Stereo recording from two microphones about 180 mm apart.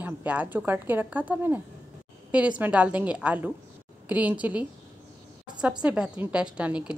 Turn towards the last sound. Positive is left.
turn(degrees=-5)  # may be behind; listen again after turning